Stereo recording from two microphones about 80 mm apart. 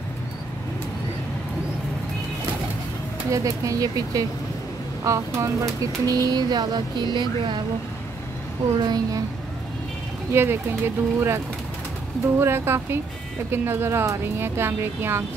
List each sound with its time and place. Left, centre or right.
3.3 s speech: right
8.7 s speech: right
10.3 s speech: right